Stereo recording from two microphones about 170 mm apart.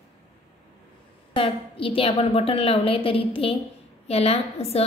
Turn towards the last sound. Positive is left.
turn(degrees=35)  # may be behind; listen again after turning